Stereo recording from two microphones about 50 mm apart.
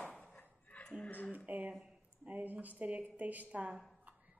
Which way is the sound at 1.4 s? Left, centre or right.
Right.